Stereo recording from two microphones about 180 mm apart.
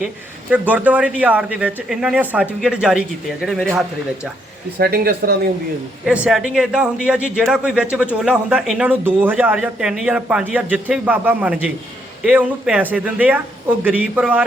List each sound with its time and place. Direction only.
0.5 s speech: 10° right (ahead or behind)
4.8 s speech: 55° right (ahead or behind)
6.1 s a man's voice: 5° right (ahead or behind)